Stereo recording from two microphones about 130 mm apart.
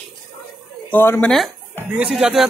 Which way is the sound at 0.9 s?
15° left (ahead or behind).